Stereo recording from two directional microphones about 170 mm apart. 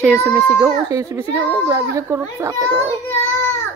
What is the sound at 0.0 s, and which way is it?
A child's voice, 15° right (ahead or behind).